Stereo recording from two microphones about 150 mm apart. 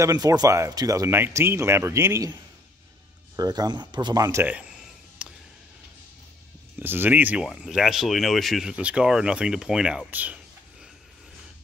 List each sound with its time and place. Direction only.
0.0 s speech: 25° right (ahead or behind)
3.3 s speech: 25° right (ahead or behind)
5.2 s a sound: 5° right (ahead or behind)
6.8 s speech: 15° right (ahead or behind)